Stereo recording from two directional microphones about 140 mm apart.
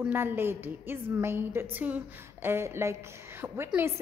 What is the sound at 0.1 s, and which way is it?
A woman's voice, 15° right (ahead or behind).